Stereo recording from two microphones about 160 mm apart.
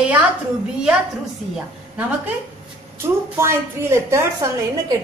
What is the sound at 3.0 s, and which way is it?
A woman's voice, 15° right (ahead or behind).